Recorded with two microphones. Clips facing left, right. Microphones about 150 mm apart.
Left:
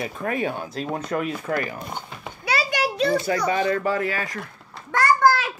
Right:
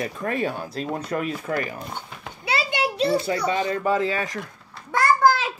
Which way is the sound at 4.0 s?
20° right (ahead or behind).